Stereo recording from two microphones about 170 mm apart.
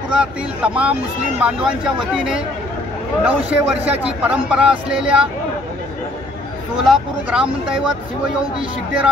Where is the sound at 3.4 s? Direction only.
5° right (ahead or behind).